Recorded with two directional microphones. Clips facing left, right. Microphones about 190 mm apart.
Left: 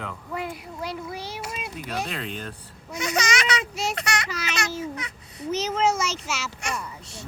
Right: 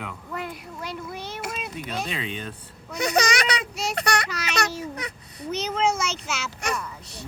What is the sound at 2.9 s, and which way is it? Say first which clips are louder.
Speech: right 3 dB; 35° right (ahead or behind).